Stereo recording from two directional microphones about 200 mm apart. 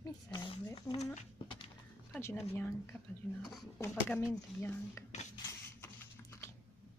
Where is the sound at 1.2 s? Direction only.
30° left (ahead or behind).